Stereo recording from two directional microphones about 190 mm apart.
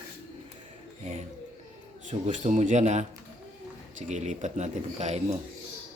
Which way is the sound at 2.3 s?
40° right (ahead or behind).